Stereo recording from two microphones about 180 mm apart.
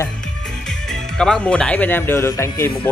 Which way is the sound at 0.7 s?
5° left (ahead or behind).